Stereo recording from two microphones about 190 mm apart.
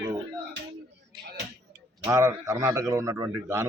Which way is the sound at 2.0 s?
15° right (ahead or behind).